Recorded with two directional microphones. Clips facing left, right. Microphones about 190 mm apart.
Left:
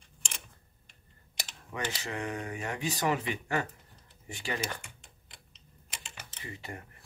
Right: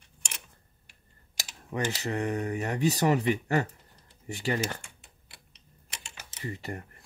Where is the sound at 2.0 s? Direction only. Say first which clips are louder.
Right 6 dB; 35° right (ahead or behind).